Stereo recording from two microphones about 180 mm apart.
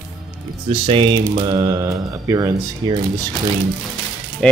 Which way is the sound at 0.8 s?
25° right (ahead or behind).